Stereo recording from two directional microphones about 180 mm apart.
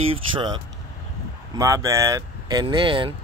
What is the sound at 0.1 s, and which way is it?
Speech, 25° right (ahead or behind).